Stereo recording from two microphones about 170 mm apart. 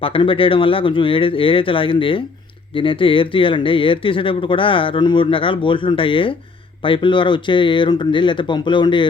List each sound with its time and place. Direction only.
0.0 s speech: 30° left (ahead or behind)